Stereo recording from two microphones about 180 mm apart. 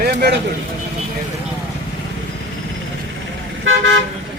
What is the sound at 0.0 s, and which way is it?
Speech, 60° right (ahead or behind).